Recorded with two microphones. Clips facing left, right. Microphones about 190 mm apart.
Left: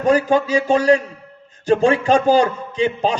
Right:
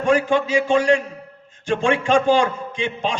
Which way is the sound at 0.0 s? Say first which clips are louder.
Left 2 dB; 35° left (ahead or behind).